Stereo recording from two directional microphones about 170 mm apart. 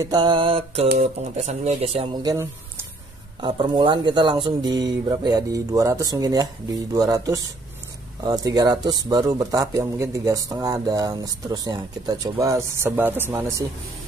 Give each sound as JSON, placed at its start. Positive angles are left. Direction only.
{"t": 0.0, "sound": "speech", "side_deg": -25}
{"t": 2.2, "sound": "speech", "side_deg": -15}
{"t": 3.3, "sound": "speech", "side_deg": -30}